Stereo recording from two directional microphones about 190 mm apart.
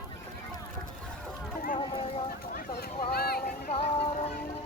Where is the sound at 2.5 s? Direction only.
55° left (ahead or behind).